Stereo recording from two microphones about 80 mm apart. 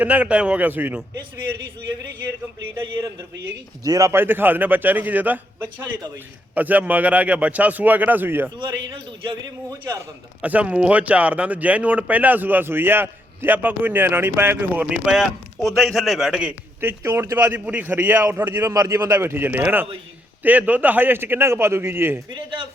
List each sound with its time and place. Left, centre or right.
0.0 s speech: centre
3.8 s speech: right
4.1 s speech: right
8.5 s a man's voice: right
10.4 s speech: centre
14.8 s speech: centre
15.6 s a man's voice: centre
16.8 s speech: right
17.4 s speech: right
18.7 s speech: right
22.3 s speech: right